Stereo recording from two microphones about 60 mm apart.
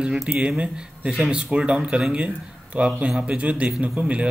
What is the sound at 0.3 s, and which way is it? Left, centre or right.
Speech, right.